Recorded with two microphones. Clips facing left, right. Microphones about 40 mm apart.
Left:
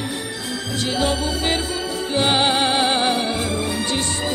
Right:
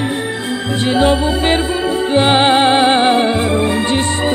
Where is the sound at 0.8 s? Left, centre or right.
Right.